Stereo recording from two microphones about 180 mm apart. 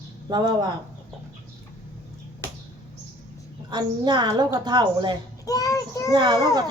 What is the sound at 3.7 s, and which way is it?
A woman's voice, 25° right (ahead or behind).